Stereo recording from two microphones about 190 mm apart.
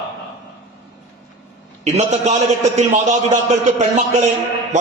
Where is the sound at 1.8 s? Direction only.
35° right (ahead or behind).